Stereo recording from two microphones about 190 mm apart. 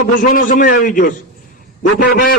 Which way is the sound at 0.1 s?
45° left (ahead or behind).